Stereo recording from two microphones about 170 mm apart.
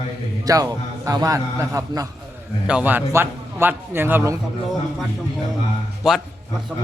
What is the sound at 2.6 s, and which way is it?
A man's voice, 10° right (ahead or behind).